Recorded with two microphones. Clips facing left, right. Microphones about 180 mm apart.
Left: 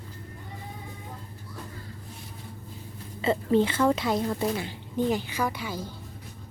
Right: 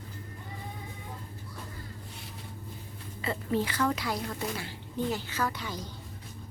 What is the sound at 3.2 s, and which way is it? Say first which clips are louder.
A woman's voice: left 7 dB; 25° left (ahead or behind).